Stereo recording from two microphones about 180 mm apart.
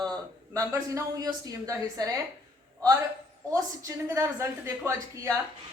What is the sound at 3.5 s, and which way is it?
A woman's voice, 15° right (ahead or behind).